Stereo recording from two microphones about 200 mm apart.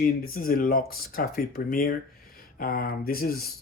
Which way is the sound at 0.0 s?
45° left (ahead or behind).